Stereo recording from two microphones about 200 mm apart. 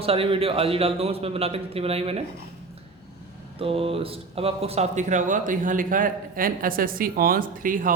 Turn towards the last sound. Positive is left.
turn(degrees=-45)  # may be behind; listen again after turning